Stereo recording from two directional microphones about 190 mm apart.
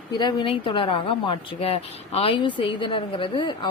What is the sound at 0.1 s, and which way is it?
A woman's voice, 25° left (ahead or behind).